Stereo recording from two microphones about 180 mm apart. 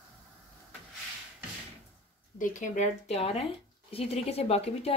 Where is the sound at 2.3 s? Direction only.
45° left (ahead or behind).